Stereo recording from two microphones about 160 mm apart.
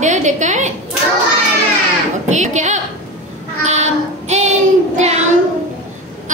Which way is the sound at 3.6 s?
45° right (ahead or behind).